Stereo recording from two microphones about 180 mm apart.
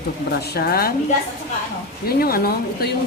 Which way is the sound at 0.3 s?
60° left (ahead or behind).